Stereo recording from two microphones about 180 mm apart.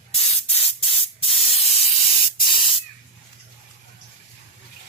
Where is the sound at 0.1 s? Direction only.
35° left (ahead or behind).